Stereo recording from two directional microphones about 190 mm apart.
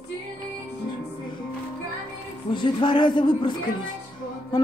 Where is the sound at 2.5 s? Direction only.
25° left (ahead or behind).